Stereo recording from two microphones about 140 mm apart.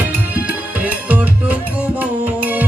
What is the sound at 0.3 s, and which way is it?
Music, 10° right (ahead or behind).